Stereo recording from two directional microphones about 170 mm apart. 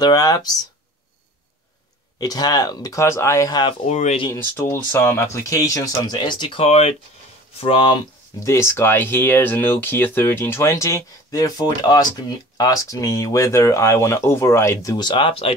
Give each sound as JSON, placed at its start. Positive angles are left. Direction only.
{"t": 0.0, "sound": "speech", "side_deg": 20}
{"t": 2.1, "sound": "speech", "side_deg": 20}
{"t": 3.8, "sound": "speech", "side_deg": 45}
{"t": 4.3, "sound": "speech", "side_deg": 15}